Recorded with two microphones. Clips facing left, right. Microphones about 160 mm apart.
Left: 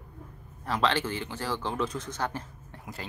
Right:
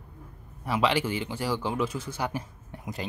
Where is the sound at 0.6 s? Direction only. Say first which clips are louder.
Right 2 dB; 10° right (ahead or behind).